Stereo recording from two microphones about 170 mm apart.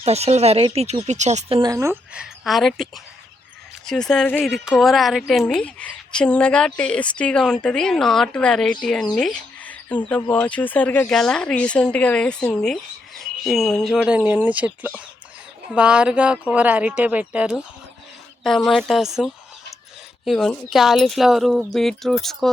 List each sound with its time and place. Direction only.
0.0 s speech: 40° right (ahead or behind)
1.6 s speech: 20° right (ahead or behind)
2.1 s speech: centre (ahead or behind)